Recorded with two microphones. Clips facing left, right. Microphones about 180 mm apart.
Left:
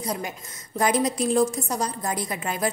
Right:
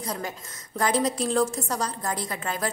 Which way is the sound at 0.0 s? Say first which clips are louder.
Left 2 dB; 15° left (ahead or behind).